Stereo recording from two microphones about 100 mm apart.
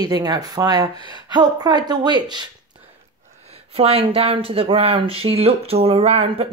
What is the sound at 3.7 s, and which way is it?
Speech, 85° right.